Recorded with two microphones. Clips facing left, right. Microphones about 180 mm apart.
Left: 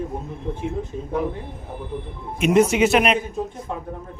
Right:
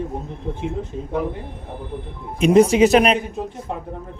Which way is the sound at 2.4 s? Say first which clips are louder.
Right 4 dB; 35° right (ahead or behind).